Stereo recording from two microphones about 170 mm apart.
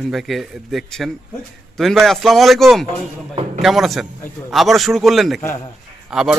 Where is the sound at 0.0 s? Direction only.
Centre (ahead or behind).